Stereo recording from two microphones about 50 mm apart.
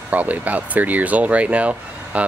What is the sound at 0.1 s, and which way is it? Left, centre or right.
Speech, right.